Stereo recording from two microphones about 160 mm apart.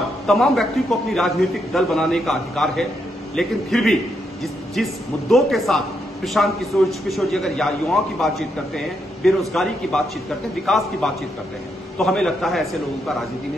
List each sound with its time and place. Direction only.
0.3 s a man's voice: centre (ahead or behind)